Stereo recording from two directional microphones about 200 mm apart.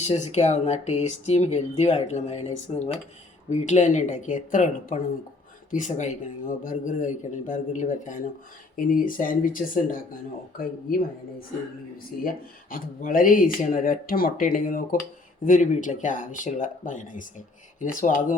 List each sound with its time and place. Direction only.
0.0 s a man's voice: 35° left (ahead or behind)
12.7 s a man's voice: 45° left (ahead or behind)